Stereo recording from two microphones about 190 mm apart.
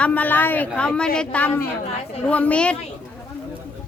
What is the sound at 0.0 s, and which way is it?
Speech, 10° left (ahead or behind).